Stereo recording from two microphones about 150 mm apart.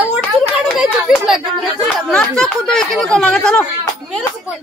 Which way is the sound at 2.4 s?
5° left (ahead or behind).